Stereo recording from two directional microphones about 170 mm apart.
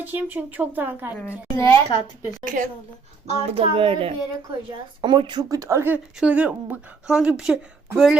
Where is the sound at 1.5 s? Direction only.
20° left (ahead or behind).